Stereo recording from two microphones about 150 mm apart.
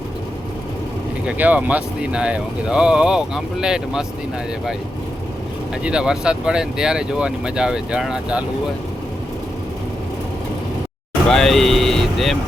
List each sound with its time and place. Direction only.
1.4 s speech: 10° right (ahead or behind)
5.8 s speech: 5° right (ahead or behind)
11.3 s vehicle: 5° left (ahead or behind)